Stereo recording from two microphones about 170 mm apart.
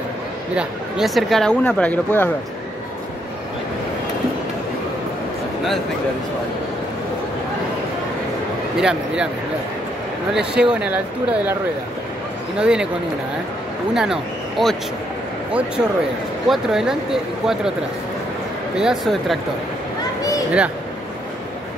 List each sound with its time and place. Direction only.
0.6 s speech: centre (ahead or behind)
8.7 s speech: 5° right (ahead or behind)
10.3 s speech: 5° right (ahead or behind)
12.5 s speech: 5° right (ahead or behind)
13.9 s speech: 5° right (ahead or behind)
18.8 s speech: centre (ahead or behind)